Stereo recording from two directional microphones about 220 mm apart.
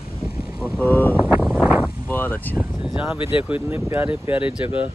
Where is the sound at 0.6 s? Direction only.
10° left (ahead or behind).